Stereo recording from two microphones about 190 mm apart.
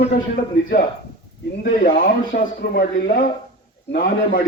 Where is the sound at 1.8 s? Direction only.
50° left (ahead or behind).